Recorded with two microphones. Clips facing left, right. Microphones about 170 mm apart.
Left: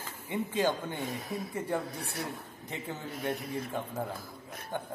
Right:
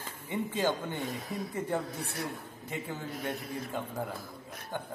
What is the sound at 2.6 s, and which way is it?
Speech, 20° left (ahead or behind).